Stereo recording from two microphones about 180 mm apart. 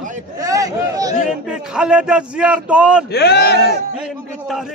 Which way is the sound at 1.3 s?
5° right (ahead or behind).